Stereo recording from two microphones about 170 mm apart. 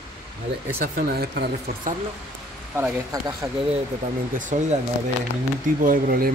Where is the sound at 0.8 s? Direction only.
65° right (ahead or behind).